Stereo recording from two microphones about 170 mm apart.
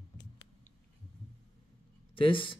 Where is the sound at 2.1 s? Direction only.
30° left (ahead or behind).